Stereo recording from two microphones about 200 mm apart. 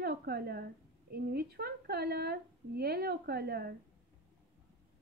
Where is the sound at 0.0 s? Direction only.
50° right (ahead or behind).